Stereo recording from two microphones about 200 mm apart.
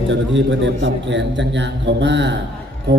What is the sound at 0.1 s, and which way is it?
A man's voice, 65° right (ahead or behind).